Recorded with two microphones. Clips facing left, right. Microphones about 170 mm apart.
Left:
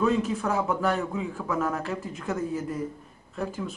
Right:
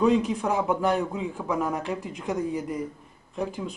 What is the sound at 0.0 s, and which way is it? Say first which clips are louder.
A man's voice: right 3 dB; 15° right (ahead or behind).